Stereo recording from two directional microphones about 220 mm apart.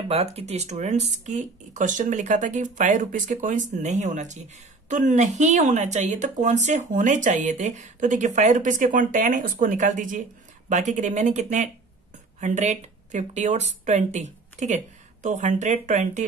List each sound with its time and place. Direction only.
0.1 s speech: 30° right (ahead or behind)